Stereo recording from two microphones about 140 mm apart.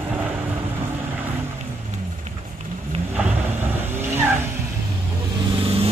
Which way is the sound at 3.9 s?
15° right (ahead or behind).